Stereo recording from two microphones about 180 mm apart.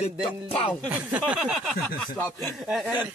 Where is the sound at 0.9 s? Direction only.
5° right (ahead or behind).